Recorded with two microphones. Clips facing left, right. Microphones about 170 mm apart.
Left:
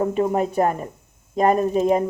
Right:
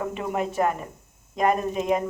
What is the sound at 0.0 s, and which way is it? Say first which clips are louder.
Speech: left 7 dB; 35° left (ahead or behind).